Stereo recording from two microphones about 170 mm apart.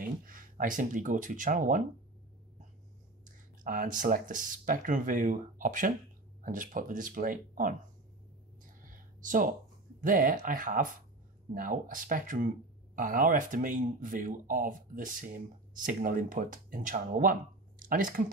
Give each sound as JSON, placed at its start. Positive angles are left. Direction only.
{"t": 0.0, "sound": "speech", "side_deg": -55}
{"t": 3.6, "sound": "speech", "side_deg": -55}
{"t": 8.8, "sound": "a sound", "side_deg": -50}
{"t": 11.5, "sound": "speech", "side_deg": -55}